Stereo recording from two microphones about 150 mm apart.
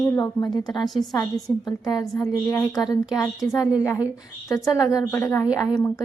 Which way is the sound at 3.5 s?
5° right (ahead or behind).